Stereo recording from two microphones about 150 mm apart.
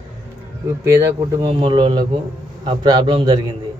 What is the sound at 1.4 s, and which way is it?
A man's voice, 35° right (ahead or behind).